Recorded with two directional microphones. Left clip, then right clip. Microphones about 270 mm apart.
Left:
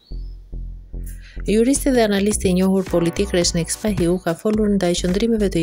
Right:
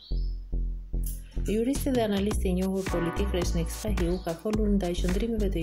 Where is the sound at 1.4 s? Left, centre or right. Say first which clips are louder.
Left 11 dB; left.